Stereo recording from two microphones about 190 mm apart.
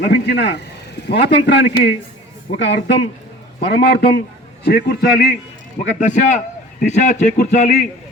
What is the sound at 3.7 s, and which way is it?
A man's voice, 60° left (ahead or behind).